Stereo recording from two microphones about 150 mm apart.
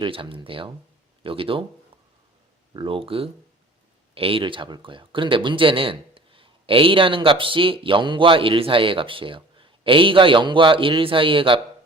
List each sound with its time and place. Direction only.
0.0 s speech: 35° right (ahead or behind)
2.7 s speech: 35° right (ahead or behind)